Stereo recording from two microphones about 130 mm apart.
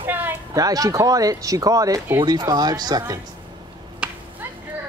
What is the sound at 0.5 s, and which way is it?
Speech, 30° right (ahead or behind).